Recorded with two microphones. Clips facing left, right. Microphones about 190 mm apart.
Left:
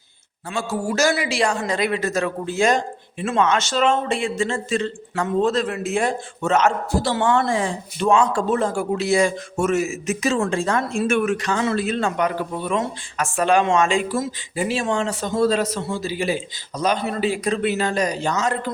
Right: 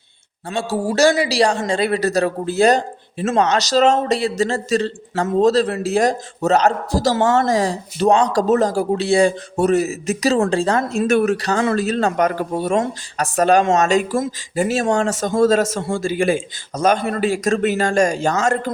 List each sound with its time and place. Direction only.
0.5 s speech: 30° right (ahead or behind)